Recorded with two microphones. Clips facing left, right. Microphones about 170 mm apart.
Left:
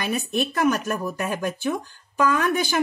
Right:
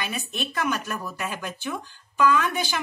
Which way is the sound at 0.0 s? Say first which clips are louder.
Left 7 dB; 45° left (ahead or behind).